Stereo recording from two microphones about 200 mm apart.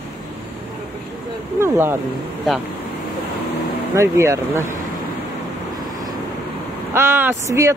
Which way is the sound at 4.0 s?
15° right (ahead or behind).